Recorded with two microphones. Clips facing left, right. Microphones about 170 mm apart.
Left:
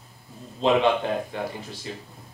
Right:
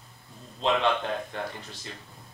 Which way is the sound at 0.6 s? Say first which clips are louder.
Left 5 dB; 5° left (ahead or behind).